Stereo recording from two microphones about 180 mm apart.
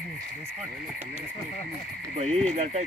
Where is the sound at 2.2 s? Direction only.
35° right (ahead or behind).